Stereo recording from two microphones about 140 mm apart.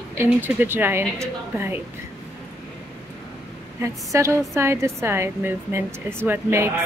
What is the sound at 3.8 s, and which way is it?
A woman's voice, 20° right (ahead or behind).